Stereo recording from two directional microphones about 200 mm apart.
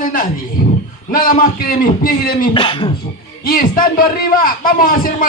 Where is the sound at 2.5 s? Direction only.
25° left (ahead or behind).